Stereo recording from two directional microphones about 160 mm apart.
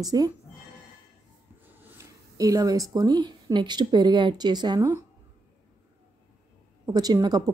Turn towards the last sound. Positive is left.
turn(degrees=-25)  # may be behind; listen again after turning